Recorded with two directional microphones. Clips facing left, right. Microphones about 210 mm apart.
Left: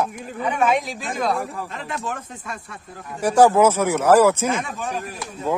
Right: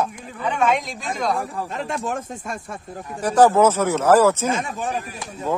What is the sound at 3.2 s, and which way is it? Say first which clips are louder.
Speech: even; 10° left (ahead or behind).